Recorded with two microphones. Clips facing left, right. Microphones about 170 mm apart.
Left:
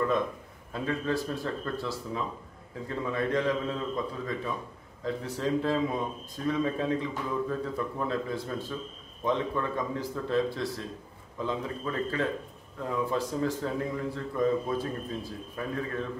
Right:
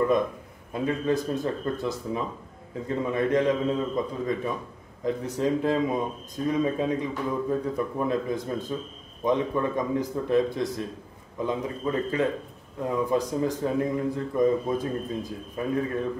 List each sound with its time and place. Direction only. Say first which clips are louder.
0.7 s a man's voice: right 4 dB; 15° right (ahead or behind)